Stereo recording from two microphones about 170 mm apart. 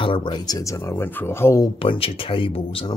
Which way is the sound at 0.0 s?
30° left (ahead or behind).